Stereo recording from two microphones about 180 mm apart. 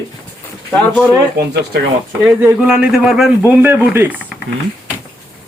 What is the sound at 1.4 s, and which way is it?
Speech, 65° right (ahead or behind).